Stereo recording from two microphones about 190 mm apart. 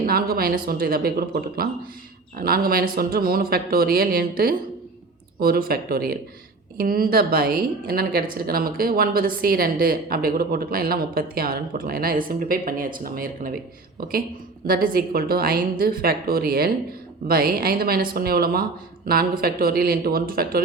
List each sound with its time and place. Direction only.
0.0 s a woman's voice: 50° right (ahead or behind)